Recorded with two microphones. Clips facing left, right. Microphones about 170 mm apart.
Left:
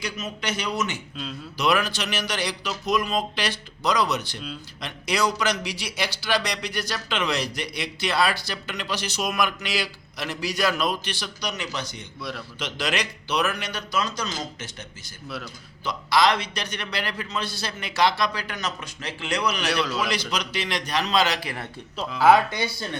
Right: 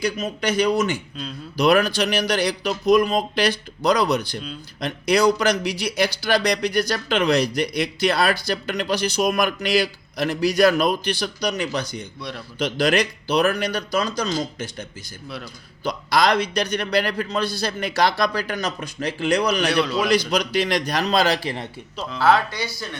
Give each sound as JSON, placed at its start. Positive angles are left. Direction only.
{"t": 0.0, "sound": "a man's voice", "side_deg": -35}
{"t": 3.8, "sound": "speech", "side_deg": -55}
{"t": 4.8, "sound": "speech", "side_deg": -45}
{"t": 13.5, "sound": "a man's voice", "side_deg": -40}
{"t": 19.6, "sound": "speech", "side_deg": 0}
{"t": 20.1, "sound": "speech", "side_deg": -50}
{"t": 21.9, "sound": "speech", "side_deg": 10}